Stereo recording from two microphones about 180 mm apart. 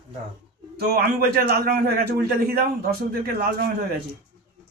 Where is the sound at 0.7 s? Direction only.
60° right (ahead or behind).